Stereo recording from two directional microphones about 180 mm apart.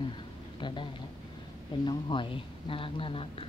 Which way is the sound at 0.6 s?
25° left (ahead or behind).